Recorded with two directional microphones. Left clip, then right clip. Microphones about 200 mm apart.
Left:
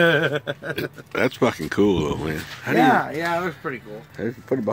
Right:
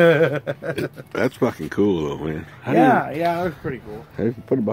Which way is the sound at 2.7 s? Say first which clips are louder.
Right 2 dB; 10° right (ahead or behind).